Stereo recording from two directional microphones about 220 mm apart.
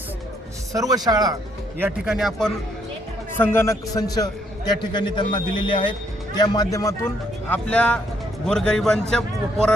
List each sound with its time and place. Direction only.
0.7 s speech: 15° right (ahead or behind)
1.8 s a man's voice: centre (ahead or behind)
3.3 s a man's voice: 10° left (ahead or behind)